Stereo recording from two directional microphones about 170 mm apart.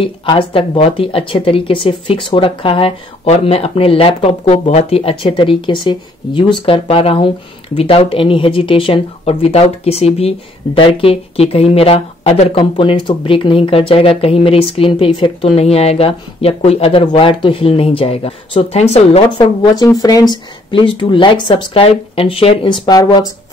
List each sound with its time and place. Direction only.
0.0 s speech: 30° left (ahead or behind)
19.3 s speech: 25° left (ahead or behind)